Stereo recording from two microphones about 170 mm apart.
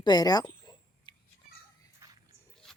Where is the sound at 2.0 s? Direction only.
20° right (ahead or behind).